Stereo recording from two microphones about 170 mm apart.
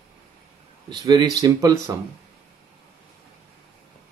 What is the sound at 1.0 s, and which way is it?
Speech, 25° right (ahead or behind).